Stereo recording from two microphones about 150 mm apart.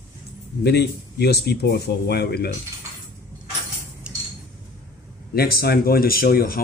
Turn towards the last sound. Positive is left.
turn(degrees=80)